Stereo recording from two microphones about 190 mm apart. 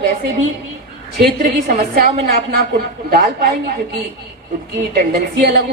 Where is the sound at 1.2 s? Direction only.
55° right (ahead or behind).